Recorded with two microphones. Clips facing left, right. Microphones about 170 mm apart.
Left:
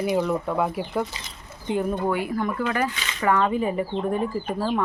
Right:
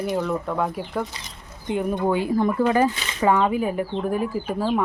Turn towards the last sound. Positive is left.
turn(degrees=-5)  # may be behind; listen again after turning